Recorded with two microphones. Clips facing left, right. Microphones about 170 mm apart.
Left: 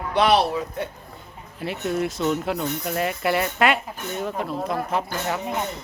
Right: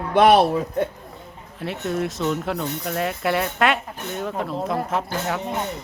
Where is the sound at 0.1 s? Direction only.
50° right (ahead or behind).